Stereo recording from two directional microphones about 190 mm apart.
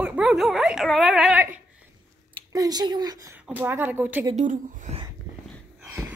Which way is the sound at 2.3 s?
20° right (ahead or behind).